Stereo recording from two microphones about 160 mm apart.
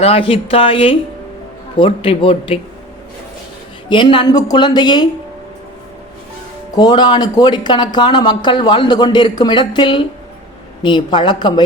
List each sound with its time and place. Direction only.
0.0 s speech: 35° left (ahead or behind)
3.8 s speech: 30° left (ahead or behind)
6.7 s speech: 25° left (ahead or behind)